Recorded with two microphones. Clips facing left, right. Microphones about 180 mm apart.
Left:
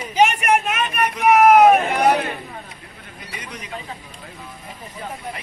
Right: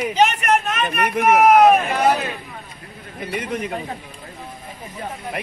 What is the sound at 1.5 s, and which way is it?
Vehicle, 10° left (ahead or behind).